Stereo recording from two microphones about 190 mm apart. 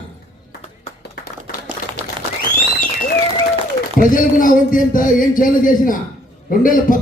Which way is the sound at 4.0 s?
45° left (ahead or behind).